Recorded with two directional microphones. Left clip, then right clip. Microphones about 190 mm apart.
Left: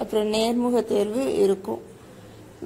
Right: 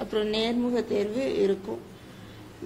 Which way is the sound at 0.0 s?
15° left (ahead or behind).